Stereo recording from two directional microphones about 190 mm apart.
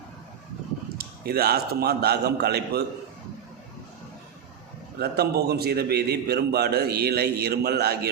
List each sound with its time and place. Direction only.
0.9 s a man's voice: 55° right (ahead or behind)
4.9 s a man's voice: 55° right (ahead or behind)